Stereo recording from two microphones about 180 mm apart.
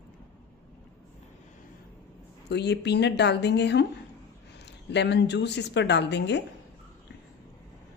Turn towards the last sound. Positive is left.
turn(degrees=70)  # may be behind; listen again after turning